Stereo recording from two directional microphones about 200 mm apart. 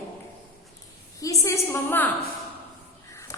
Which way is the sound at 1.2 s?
15° left (ahead or behind).